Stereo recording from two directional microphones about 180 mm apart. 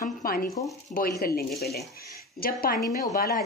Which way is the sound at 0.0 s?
55° left (ahead or behind).